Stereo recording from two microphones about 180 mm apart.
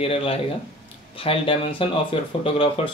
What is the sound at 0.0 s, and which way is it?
Speech, 30° left (ahead or behind).